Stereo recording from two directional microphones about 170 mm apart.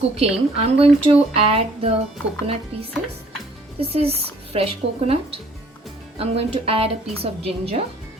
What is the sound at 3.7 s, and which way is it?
Speech, 35° right (ahead or behind).